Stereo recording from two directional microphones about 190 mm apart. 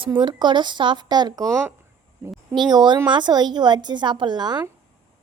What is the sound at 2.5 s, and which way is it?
A woman's voice, 20° right (ahead or behind).